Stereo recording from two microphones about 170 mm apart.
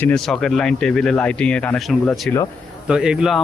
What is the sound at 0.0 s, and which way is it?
A man's voice, 5° left (ahead or behind).